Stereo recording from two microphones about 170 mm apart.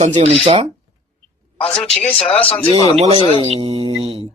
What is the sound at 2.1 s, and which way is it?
Speech, 30° left (ahead or behind).